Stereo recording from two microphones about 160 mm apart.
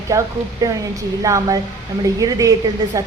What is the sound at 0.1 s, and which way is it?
A woman's voice, 20° right (ahead or behind).